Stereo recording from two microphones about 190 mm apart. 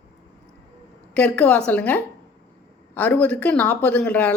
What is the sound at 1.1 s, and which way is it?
Speech, 5° left (ahead or behind).